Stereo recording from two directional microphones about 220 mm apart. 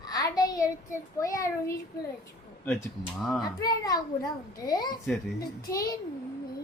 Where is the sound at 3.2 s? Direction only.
Centre (ahead or behind).